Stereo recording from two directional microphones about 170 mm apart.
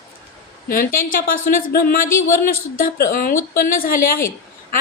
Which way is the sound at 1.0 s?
55° left (ahead or behind).